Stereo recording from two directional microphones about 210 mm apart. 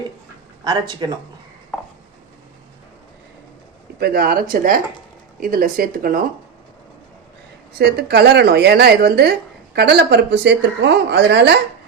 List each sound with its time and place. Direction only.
0.6 s speech: 20° right (ahead or behind)
4.0 s speech: 45° right (ahead or behind)
7.8 s speech: 50° right (ahead or behind)